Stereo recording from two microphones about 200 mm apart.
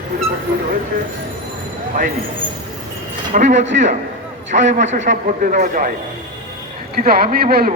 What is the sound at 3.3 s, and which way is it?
A man's voice, 35° right (ahead or behind).